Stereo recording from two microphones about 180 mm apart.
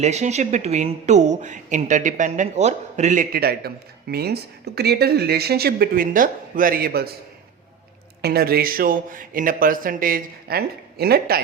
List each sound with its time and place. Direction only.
0.0 s a woman's voice: 40° right (ahead or behind); by 7.1 s 60° right (ahead or behind)
8.2 s speech: 60° right (ahead or behind)